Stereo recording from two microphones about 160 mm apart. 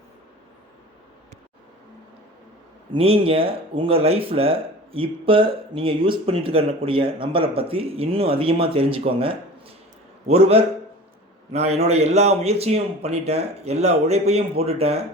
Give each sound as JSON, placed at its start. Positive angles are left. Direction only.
{"t": 2.9, "sound": "speech", "side_deg": -35}